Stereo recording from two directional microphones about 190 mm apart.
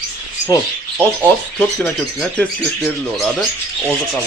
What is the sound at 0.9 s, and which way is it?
Speech, centre (ahead or behind).